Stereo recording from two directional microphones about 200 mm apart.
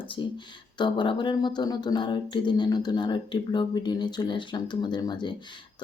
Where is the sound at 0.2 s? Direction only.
25° left (ahead or behind).